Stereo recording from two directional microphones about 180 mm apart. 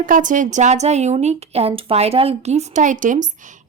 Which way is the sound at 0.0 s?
45° right (ahead or behind).